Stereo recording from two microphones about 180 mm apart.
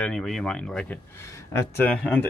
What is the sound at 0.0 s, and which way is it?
Speech, 5° left (ahead or behind).